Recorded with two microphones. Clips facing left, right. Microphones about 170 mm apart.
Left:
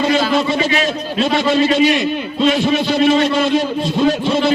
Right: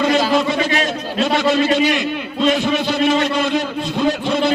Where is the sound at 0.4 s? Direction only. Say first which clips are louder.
Left 2 dB; 50° right (ahead or behind).